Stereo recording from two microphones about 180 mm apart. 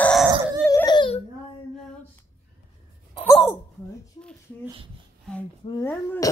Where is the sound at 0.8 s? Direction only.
25° left (ahead or behind).